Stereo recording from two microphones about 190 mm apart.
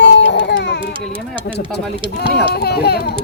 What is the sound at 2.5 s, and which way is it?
Speech, 55° left (ahead or behind).